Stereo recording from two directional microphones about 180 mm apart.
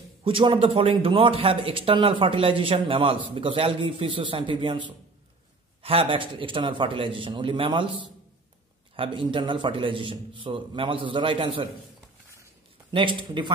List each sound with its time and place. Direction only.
0.2 s a man's voice: 30° right (ahead or behind)
12.9 s a man's voice: 25° right (ahead or behind)